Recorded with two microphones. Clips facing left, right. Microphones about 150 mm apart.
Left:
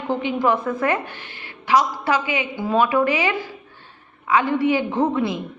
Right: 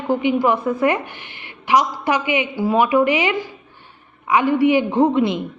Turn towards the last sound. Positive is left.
turn(degrees=-20)  # may be behind; listen again after turning